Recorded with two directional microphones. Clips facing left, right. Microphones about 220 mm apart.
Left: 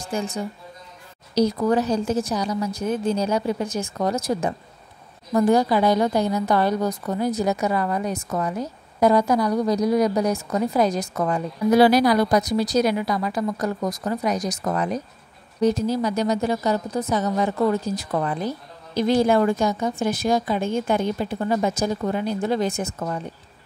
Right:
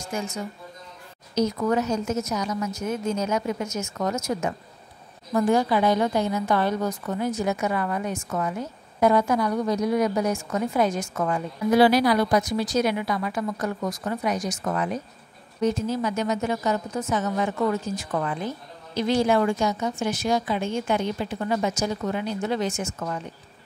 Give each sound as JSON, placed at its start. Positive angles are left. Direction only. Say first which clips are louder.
{"t": 0.0, "sound": "a woman's voice", "louder": "left 3 dB", "side_deg": 35}